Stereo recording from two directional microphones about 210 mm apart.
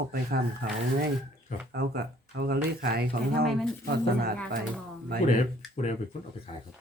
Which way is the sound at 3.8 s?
45° right (ahead or behind).